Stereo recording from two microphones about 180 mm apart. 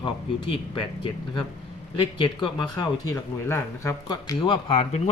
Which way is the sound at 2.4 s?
20° left (ahead or behind).